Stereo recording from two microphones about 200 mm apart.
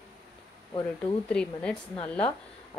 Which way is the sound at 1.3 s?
5° left (ahead or behind).